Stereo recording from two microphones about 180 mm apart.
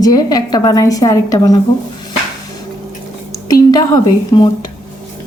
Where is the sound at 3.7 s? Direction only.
20° left (ahead or behind).